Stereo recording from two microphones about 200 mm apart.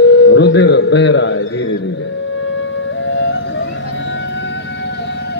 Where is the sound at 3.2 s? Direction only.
65° left (ahead or behind).